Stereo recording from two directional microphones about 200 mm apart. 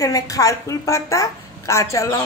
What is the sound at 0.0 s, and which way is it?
A woman's voice, 15° left (ahead or behind).